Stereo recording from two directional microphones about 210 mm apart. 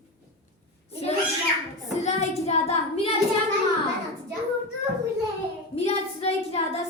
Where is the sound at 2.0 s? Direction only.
30° left (ahead or behind).